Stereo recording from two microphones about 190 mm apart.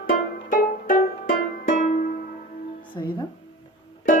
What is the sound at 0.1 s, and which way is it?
Music, 45° left (ahead or behind).